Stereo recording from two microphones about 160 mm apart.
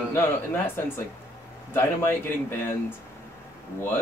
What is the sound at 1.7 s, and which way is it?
Speech, 15° left (ahead or behind).